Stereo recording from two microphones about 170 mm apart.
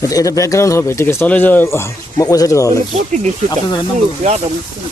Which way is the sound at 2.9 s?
45° right (ahead or behind).